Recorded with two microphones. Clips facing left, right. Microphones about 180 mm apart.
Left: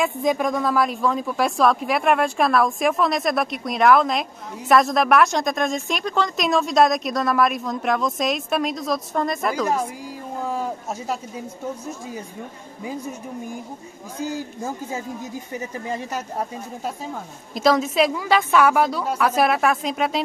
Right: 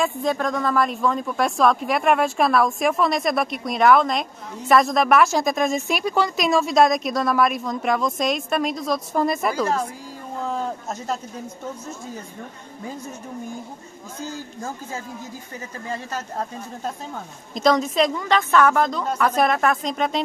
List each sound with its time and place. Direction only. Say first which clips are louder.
0.2 s speech: left 2 dB; 15° left (ahead or behind); by 9.7 s 5° right (ahead or behind)
10.4 s speech: even; 5° left (ahead or behind)
14.2 s speech: left 4 dB; 15° left (ahead or behind)